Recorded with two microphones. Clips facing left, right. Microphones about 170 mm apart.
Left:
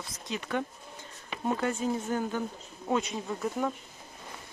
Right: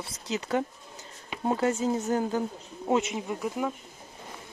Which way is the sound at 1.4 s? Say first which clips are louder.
Right 4 dB; 25° right (ahead or behind).